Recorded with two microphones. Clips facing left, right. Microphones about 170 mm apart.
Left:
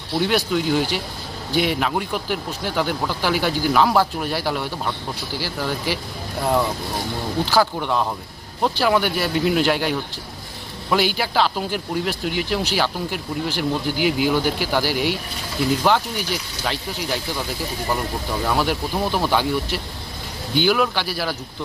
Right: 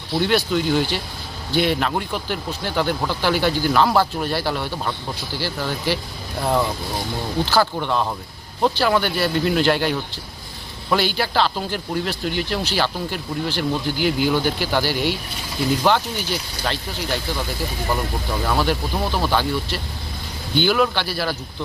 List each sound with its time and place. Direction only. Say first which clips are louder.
0.2 s speech: right 1 dB; 5° left (ahead or behind)
18.4 s speech: even; 5° left (ahead or behind)